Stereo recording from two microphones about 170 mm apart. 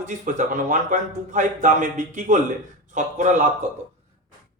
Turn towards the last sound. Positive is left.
turn(degrees=-45)  # may be behind; listen again after turning